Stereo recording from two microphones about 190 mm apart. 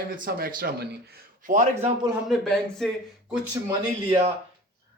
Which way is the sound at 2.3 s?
Centre (ahead or behind).